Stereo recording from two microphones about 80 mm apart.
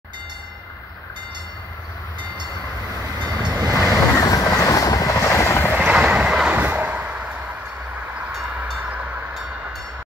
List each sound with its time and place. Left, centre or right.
3.0 s train: right
3.5 s train: right
4.2 s vehicle: left
5.2 s train: left
5.7 s vehicle: centre
6.5 s a sound: right